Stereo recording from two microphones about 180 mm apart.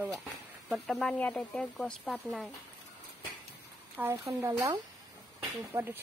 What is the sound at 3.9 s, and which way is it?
Speech, 15° right (ahead or behind).